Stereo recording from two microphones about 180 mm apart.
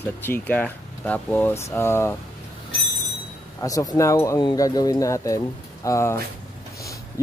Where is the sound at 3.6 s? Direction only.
20° left (ahead or behind).